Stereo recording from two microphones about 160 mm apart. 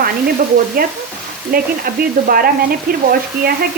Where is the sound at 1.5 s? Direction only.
65° right (ahead or behind).